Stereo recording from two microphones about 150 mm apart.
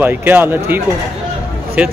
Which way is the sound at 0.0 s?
10° right (ahead or behind).